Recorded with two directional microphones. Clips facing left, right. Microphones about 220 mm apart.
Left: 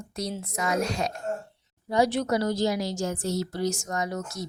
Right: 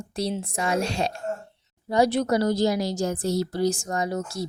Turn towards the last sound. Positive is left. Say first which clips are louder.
# right 4 dB
turn(degrees=-35)  # may be behind; listen again after turning